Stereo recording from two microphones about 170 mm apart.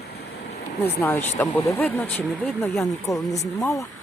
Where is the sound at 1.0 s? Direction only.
10° left (ahead or behind).